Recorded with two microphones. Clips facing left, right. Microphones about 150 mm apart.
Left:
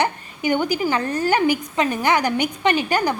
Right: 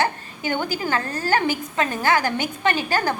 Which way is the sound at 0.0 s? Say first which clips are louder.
Left 2 dB; 15° left (ahead or behind).